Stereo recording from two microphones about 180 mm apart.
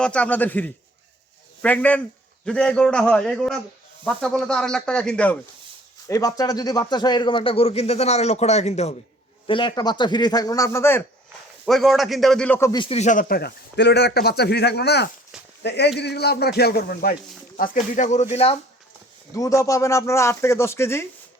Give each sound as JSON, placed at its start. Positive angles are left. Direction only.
{"t": 0.0, "sound": "a man's voice", "side_deg": 5}
{"t": 6.1, "sound": "speech", "side_deg": 20}
{"t": 9.5, "sound": "a man's voice", "side_deg": 25}
{"t": 11.6, "sound": "a man's voice", "side_deg": 0}
{"t": 12.8, "sound": "speech", "side_deg": 35}
{"t": 17.6, "sound": "speech", "side_deg": 45}
{"t": 19.3, "sound": "speech", "side_deg": 20}